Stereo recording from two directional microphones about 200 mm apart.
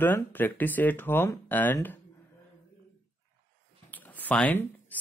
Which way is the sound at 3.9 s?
10° left (ahead or behind).